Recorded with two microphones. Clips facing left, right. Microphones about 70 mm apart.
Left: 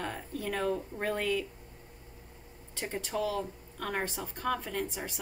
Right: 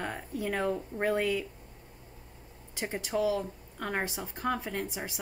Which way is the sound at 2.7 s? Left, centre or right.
Centre.